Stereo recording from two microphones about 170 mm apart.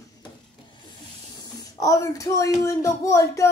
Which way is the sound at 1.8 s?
20° left (ahead or behind).